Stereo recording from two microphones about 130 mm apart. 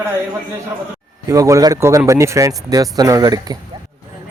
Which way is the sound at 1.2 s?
25° right (ahead or behind).